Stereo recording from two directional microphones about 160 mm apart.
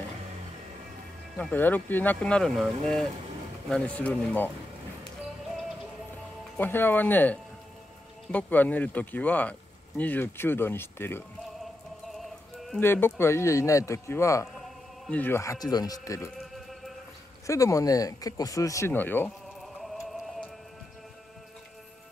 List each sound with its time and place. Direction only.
1.4 s speech: 10° left (ahead or behind)
3.6 s speech: 5° left (ahead or behind)
6.5 s speech: 10° left (ahead or behind)
12.1 s music: centre (ahead or behind)
12.8 s speech: 15° left (ahead or behind)
16.3 s a sound: centre (ahead or behind)
17.5 s speech: 20° left (ahead or behind)
19.8 s music: centre (ahead or behind)